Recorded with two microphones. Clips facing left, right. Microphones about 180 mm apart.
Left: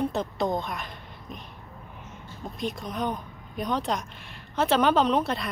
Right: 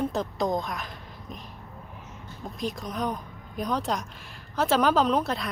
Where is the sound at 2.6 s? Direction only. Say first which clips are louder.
Even; centre (ahead or behind).